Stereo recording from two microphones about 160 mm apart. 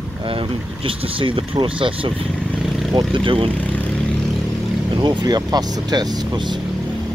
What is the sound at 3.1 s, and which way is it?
Speech, 35° right (ahead or behind).